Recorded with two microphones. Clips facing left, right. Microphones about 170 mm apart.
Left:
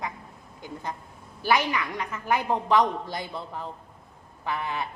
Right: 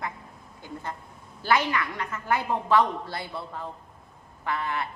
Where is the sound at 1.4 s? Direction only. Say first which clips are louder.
Even; 15° left (ahead or behind).